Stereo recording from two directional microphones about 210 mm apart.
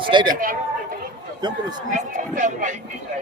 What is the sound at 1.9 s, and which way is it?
Speech, 35° right (ahead or behind).